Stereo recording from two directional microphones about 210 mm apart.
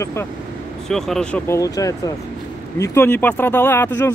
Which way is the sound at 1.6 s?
15° left (ahead or behind).